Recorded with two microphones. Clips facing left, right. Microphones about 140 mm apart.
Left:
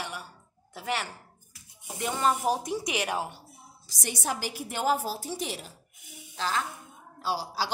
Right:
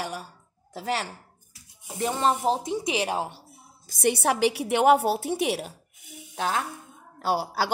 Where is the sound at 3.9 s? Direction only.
60° right (ahead or behind).